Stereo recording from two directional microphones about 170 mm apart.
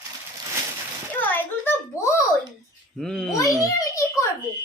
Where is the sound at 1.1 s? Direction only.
10° left (ahead or behind).